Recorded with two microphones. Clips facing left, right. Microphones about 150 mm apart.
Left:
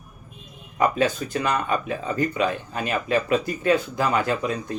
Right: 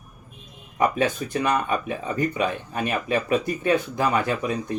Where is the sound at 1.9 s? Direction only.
30° left (ahead or behind).